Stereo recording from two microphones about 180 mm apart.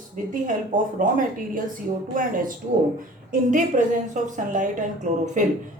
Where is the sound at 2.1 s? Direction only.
50° right (ahead or behind).